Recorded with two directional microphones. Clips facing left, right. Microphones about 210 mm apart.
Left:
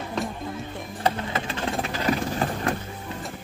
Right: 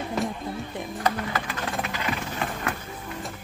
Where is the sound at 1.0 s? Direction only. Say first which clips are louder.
Left 2 dB; 25° left (ahead or behind).